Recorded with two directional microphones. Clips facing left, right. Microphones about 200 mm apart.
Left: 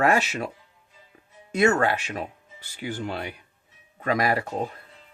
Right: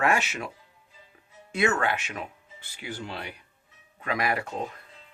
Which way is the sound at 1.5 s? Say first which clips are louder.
Left 5 dB; 40° left (ahead or behind).